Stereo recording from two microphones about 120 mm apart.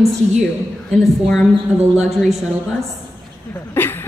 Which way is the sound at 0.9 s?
Centre (ahead or behind).